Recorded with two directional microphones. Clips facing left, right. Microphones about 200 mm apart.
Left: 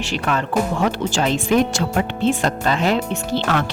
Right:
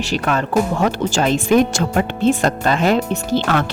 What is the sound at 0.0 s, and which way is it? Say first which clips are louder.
Speech: right 3 dB; 40° right (ahead or behind).